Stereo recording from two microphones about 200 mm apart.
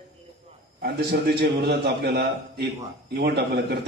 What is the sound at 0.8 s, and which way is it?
A man's voice, 55° right (ahead or behind).